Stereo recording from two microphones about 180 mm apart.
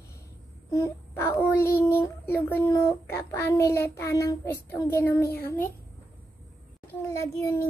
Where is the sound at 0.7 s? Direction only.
15° left (ahead or behind).